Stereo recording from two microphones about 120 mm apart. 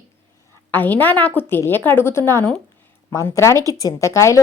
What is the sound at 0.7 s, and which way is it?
A woman's voice, 15° left (ahead or behind).